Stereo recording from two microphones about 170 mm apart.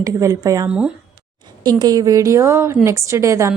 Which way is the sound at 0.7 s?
5° right (ahead or behind).